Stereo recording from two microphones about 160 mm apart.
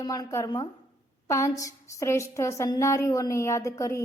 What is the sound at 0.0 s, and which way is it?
A woman's voice, 25° left (ahead or behind).